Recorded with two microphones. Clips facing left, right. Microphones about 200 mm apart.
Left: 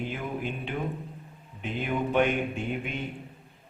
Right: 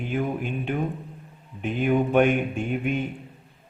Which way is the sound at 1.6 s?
50° right (ahead or behind).